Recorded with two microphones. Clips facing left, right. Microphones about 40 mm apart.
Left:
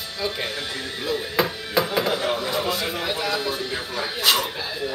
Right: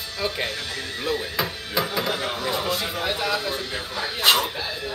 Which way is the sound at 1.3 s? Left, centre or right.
Centre.